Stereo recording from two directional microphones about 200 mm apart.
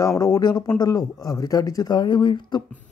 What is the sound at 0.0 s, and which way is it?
Speech, 15° left (ahead or behind).